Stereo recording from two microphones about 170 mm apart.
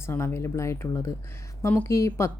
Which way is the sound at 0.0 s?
15° left (ahead or behind).